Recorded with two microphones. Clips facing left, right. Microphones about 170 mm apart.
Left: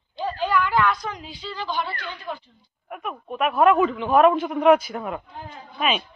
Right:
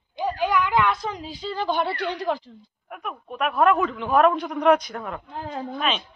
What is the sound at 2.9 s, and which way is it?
A man's voice, centre (ahead or behind).